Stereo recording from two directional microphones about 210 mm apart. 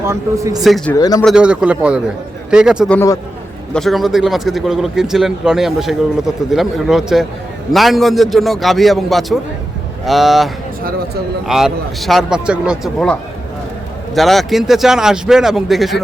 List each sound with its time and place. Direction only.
0.0 s speech: 15° right (ahead or behind)
0.6 s speech: centre (ahead or behind)
0.9 s speech: 15° left (ahead or behind)
1.2 s speech: centre (ahead or behind)
14.2 s speech: centre (ahead or behind)